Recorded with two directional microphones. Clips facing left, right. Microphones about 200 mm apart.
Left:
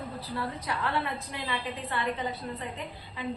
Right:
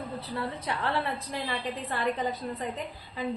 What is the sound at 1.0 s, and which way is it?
A woman's voice, 35° right (ahead or behind).